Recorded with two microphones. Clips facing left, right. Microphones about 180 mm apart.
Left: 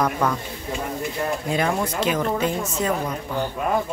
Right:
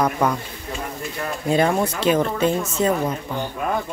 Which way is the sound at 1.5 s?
30° right (ahead or behind).